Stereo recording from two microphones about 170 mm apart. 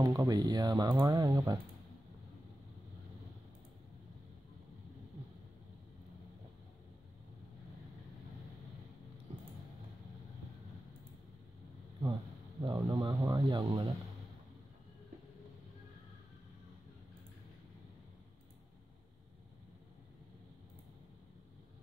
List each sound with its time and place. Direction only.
0.0 s speech: 20° right (ahead or behind)
12.6 s speech: 25° right (ahead or behind)